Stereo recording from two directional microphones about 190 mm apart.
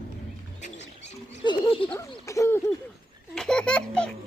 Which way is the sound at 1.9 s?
15° left (ahead or behind).